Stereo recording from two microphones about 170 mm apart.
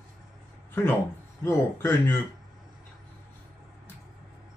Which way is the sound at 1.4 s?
15° left (ahead or behind).